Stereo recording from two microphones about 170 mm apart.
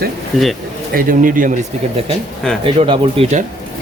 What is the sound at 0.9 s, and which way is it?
Speech, 55° right (ahead or behind).